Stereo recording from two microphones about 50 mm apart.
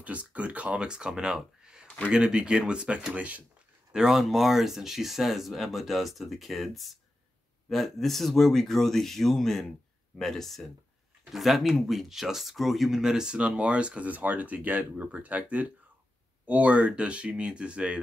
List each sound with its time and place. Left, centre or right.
0.0 s speech: right
3.2 s speech: right
3.9 s speech: centre